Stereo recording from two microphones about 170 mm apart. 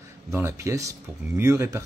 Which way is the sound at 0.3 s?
15° right (ahead or behind).